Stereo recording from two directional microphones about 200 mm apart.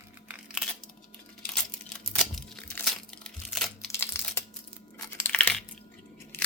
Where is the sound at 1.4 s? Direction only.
5° left (ahead or behind).